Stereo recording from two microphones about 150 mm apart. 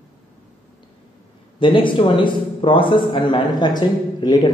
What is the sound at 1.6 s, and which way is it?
A man's voice, 35° left (ahead or behind).